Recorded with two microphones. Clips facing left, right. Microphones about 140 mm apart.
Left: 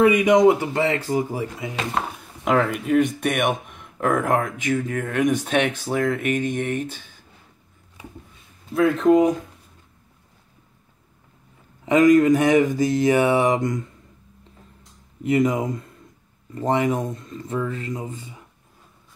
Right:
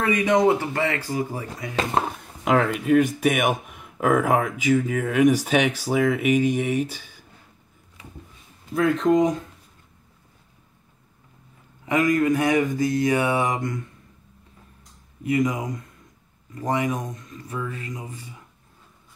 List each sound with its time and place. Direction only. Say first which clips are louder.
0.0 s speech: left 5 dB; 15° left (ahead or behind)
2.4 s speech: even; centre (ahead or behind)
8.7 s speech: left 3 dB; centre (ahead or behind)
11.8 s speech: left 6 dB; 20° left (ahead or behind)
15.2 s speech: left 3 dB; 25° left (ahead or behind)